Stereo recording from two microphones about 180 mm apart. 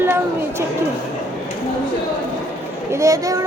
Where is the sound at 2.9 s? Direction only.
15° right (ahead or behind).